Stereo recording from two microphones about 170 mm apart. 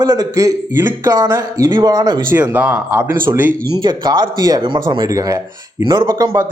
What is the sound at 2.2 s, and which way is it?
Speech, 10° right (ahead or behind).